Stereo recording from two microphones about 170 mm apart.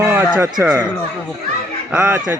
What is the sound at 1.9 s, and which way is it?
Speech, 5° right (ahead or behind).